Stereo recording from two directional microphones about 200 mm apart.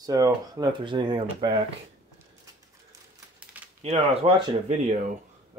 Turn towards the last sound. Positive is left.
turn(degrees=-30)  # may be behind; listen again after turning